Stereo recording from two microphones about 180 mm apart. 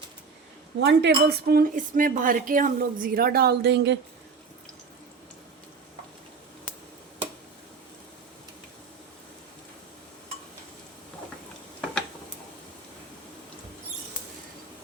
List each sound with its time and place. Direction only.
0.8 s speech: 70° right (ahead or behind)